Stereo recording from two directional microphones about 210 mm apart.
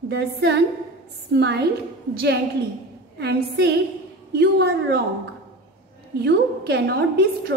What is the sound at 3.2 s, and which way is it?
A woman's voice, 50° right (ahead or behind).